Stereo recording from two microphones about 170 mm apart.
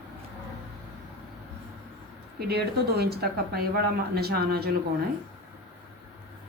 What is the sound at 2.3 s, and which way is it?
Speech, 70° right (ahead or behind).